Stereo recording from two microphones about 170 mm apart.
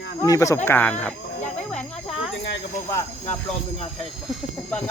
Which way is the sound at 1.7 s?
5° left (ahead or behind).